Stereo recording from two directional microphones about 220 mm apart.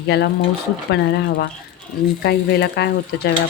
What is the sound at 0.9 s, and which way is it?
Speech, 50° left (ahead or behind).